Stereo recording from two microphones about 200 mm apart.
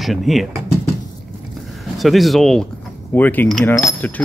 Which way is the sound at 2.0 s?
Centre (ahead or behind).